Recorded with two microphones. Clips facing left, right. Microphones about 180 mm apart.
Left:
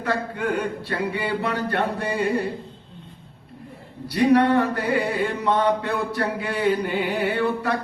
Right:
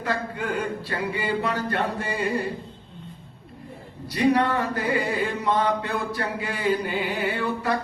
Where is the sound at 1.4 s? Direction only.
65° left (ahead or behind).